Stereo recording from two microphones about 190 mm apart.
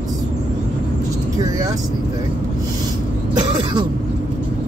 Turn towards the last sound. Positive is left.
turn(degrees=-25)  # may be behind; listen again after turning